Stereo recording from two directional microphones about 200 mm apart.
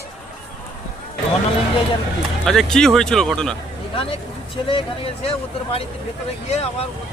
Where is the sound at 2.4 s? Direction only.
Centre (ahead or behind).